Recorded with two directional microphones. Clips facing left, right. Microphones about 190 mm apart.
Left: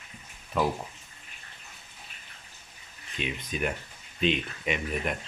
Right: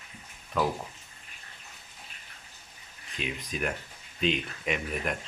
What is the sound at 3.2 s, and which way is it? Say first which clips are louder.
Speech: left 2 dB; centre (ahead or behind).